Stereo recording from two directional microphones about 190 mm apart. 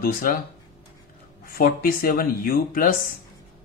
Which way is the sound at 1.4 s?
50° left (ahead or behind).